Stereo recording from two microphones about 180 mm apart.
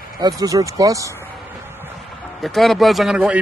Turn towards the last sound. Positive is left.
turn(degrees=-5)  # may be behind; listen again after turning